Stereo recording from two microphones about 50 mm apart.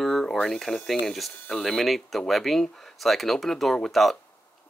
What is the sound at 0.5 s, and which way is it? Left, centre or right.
Speech, centre.